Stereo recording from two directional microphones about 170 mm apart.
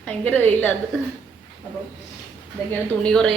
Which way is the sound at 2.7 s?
5° left (ahead or behind).